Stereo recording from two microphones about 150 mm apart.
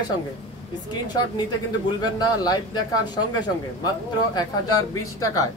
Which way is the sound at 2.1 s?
25° left (ahead or behind).